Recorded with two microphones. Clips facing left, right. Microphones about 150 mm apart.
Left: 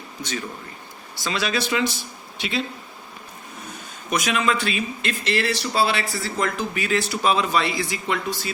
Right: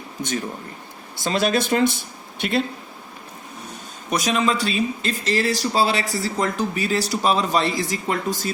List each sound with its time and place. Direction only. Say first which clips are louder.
1.2 s speech: right 5 dB; 50° right (ahead or behind)
4.1 s speech: right 1 dB; 35° right (ahead or behind)